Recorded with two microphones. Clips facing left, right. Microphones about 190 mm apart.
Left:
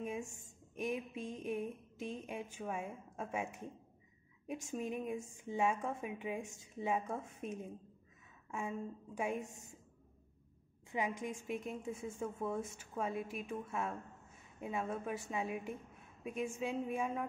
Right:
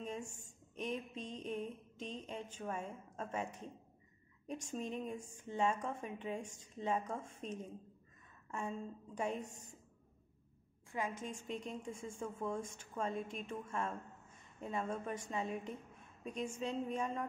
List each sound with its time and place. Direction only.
0.7 s a woman's voice: 10° left (ahead or behind)
10.9 s a woman's voice: 15° left (ahead or behind)